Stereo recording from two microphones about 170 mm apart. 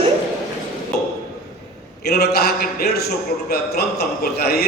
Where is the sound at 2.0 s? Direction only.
70° left (ahead or behind).